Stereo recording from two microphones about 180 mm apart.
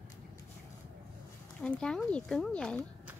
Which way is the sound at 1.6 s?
5° left (ahead or behind).